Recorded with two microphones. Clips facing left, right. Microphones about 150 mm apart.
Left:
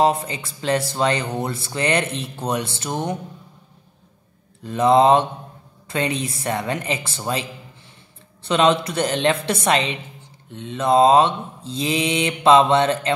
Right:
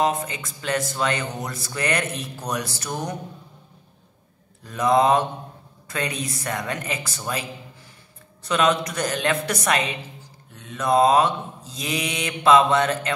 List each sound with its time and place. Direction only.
0.0 s a woman's voice: 30° left (ahead or behind)
4.6 s a woman's voice: 25° left (ahead or behind)
8.5 s a woman's voice: 25° left (ahead or behind)